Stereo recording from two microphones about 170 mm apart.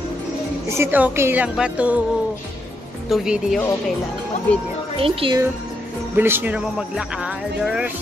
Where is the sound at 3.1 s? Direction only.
Centre (ahead or behind).